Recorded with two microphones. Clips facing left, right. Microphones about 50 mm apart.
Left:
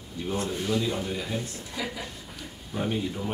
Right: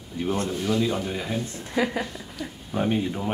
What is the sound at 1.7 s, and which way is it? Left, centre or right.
Speech, right.